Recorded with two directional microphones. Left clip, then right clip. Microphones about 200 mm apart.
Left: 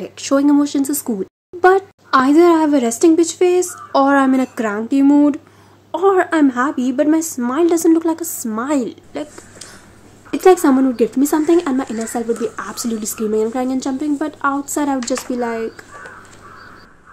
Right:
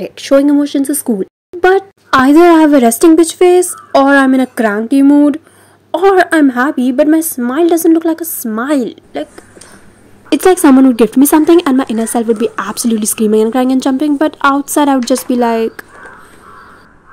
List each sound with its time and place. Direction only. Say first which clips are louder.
0.0 s speech: right 7 dB; 15° right (ahead or behind)
1.6 s a sound: right 3 dB; 20° right (ahead or behind)
2.0 s a woman's voice: right 5 dB; 35° right (ahead or behind); by 9.3 s 20° right (ahead or behind)
10.4 s speech: right 4 dB; 40° right (ahead or behind)